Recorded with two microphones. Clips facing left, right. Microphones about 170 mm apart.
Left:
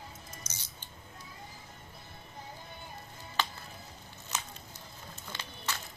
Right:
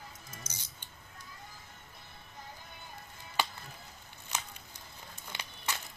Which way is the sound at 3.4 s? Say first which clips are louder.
Right 1 dB; 10° right (ahead or behind).